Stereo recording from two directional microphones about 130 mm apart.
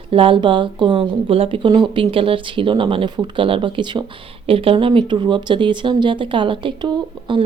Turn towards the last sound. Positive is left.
turn(degrees=-40)  # may be behind; listen again after turning